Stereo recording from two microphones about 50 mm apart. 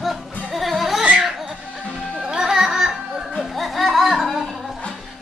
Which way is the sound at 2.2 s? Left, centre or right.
Centre.